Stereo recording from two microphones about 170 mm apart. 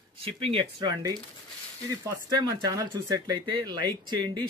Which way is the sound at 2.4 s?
20° right (ahead or behind).